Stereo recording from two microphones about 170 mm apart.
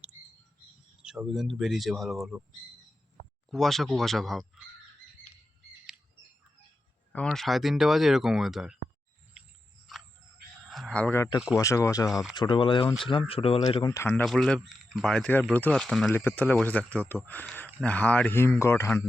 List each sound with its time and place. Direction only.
1.0 s speech: 5° right (ahead or behind)
3.5 s speech: centre (ahead or behind)
7.1 s speech: 10° left (ahead or behind)
9.9 s frog: centre (ahead or behind)
10.7 s a sound: 5° left (ahead or behind)
11.5 s speech: 20° left (ahead or behind); by 13.8 s 35° left (ahead or behind)
13.8 s speech: 15° left (ahead or behind)
14.3 s speech: 5° left (ahead or behind)